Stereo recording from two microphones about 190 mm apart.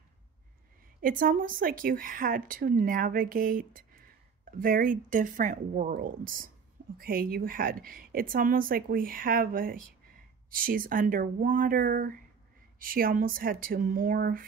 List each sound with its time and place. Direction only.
1.0 s a woman's voice: 45° right (ahead or behind)